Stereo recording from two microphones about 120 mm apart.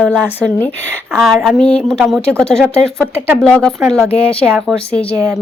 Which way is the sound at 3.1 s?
15° right (ahead or behind).